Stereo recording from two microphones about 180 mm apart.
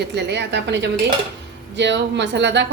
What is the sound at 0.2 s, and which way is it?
A woman's voice, 70° right (ahead or behind).